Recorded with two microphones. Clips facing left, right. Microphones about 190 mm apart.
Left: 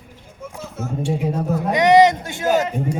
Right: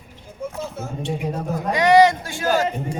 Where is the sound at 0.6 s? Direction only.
35° right (ahead or behind).